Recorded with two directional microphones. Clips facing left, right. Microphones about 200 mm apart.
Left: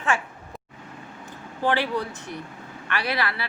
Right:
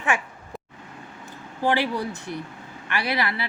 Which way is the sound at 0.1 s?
15° right (ahead or behind).